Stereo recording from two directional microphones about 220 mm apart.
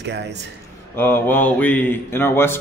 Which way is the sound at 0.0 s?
50° right (ahead or behind).